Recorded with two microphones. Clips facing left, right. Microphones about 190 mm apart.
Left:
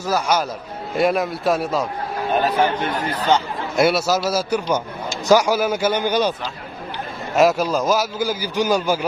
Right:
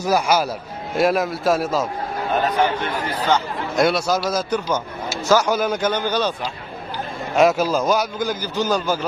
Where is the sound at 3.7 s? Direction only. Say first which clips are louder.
Left 1 dB; 5° left (ahead or behind).